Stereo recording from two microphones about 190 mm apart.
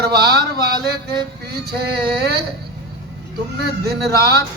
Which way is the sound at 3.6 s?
55° right (ahead or behind).